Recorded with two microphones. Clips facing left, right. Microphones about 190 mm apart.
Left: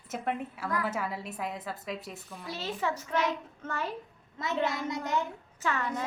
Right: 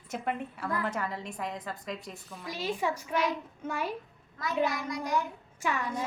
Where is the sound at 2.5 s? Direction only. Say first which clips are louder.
Right 1 dB; 10° right (ahead or behind).